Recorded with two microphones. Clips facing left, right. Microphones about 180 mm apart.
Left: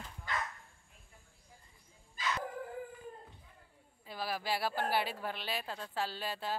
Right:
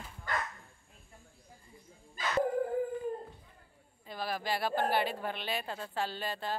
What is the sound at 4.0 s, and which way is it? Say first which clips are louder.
Speech: right 2 dB; 5° left (ahead or behind).